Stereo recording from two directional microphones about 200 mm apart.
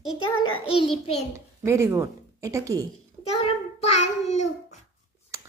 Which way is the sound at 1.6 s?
15° right (ahead or behind).